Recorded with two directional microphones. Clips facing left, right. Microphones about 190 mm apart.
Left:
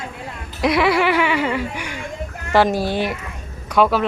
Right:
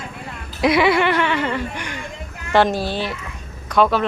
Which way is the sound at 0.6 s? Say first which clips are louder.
Right 1 dB; centre (ahead or behind).